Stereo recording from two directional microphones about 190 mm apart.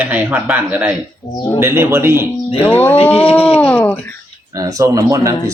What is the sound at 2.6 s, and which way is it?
Speech, 10° left (ahead or behind).